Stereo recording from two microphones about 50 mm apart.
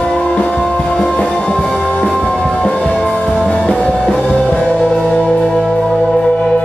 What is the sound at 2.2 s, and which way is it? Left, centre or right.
Music, centre.